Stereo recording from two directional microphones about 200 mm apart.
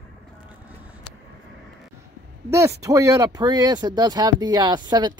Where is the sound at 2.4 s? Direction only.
15° right (ahead or behind).